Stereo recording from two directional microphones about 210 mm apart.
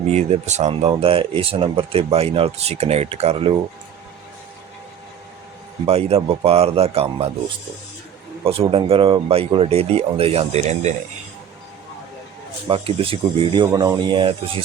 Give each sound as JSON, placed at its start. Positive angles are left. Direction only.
{"t": 0.1, "sound": "speech", "side_deg": -30}
{"t": 5.8, "sound": "speech", "side_deg": -25}
{"t": 8.7, "sound": "speech", "side_deg": -25}
{"t": 12.6, "sound": "speech", "side_deg": -25}